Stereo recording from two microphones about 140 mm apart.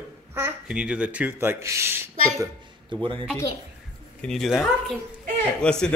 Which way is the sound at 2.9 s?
35° right (ahead or behind).